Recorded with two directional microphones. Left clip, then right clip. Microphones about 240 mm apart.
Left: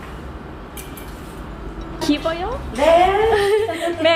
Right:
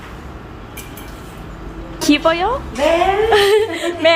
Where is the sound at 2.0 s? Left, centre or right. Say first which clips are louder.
Right 7 dB; right.